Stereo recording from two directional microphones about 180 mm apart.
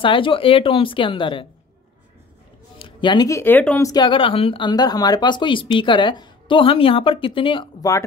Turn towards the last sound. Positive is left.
turn(degrees=25)  # may be behind; listen again after turning